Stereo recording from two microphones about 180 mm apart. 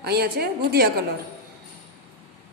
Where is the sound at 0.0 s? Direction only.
60° right (ahead or behind).